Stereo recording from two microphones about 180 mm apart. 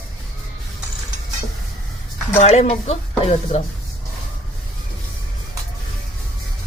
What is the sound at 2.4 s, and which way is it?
A woman's voice, 40° left (ahead or behind).